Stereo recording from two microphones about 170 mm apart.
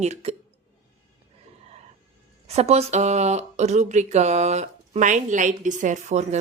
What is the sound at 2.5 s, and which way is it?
A woman's voice, 40° right (ahead or behind).